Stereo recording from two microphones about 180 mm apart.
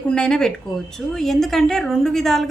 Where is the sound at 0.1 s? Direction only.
5° left (ahead or behind).